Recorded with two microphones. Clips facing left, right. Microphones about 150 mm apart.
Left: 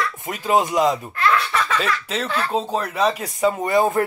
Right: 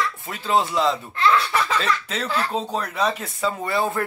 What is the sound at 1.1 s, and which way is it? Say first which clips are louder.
Baby laughter: even; 30° right (ahead or behind).